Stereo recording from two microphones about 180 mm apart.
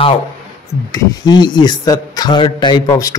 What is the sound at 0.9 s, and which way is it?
Speech, 25° left (ahead or behind).